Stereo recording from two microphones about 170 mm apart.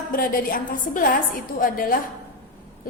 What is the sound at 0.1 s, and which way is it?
A woman's voice, 60° left (ahead or behind).